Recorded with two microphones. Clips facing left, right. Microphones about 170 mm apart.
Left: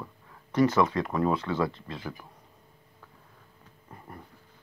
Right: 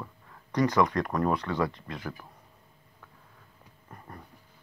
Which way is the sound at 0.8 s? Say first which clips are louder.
Even; 5° left (ahead or behind).